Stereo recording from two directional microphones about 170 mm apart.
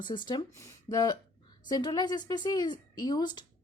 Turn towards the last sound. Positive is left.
turn(degrees=25)  # may be behind; listen again after turning